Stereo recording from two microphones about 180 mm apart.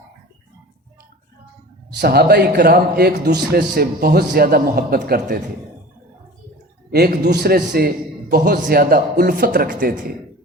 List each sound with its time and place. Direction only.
1.9 s a man's voice: 65° right (ahead or behind)
6.9 s a man's voice: 60° right (ahead or behind)